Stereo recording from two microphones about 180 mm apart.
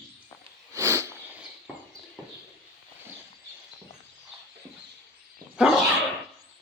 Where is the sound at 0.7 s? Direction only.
15° right (ahead or behind).